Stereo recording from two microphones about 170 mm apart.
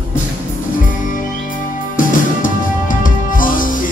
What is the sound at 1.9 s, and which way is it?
Music, 55° left (ahead or behind).